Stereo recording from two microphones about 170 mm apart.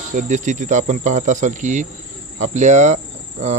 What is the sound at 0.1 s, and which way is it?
Cricket, 50° right (ahead or behind).